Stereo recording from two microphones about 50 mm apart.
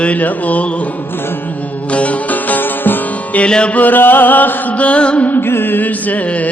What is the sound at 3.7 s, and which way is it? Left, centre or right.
Mantra, left.